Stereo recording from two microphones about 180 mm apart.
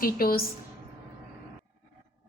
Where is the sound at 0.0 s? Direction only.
55° left (ahead or behind).